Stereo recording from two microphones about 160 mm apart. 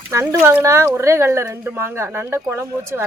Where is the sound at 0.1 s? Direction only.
15° right (ahead or behind).